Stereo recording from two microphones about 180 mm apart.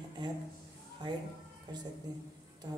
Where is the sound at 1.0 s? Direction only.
25° right (ahead or behind).